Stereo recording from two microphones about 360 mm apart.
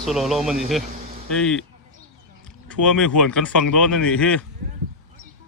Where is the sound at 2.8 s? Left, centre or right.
Centre.